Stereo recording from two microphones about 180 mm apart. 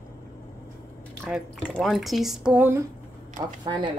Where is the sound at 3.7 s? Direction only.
25° right (ahead or behind).